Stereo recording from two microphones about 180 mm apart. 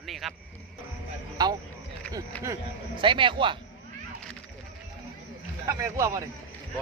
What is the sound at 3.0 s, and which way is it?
Speech, 25° right (ahead or behind).